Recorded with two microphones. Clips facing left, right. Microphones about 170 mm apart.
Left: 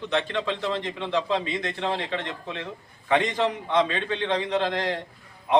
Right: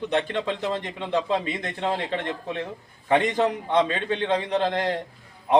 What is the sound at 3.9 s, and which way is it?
Speech, 15° right (ahead or behind).